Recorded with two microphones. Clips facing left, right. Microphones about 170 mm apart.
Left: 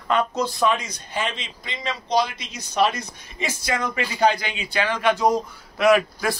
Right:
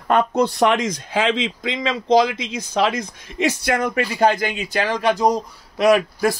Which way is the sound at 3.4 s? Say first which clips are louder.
Right 6 dB; 65° right (ahead or behind).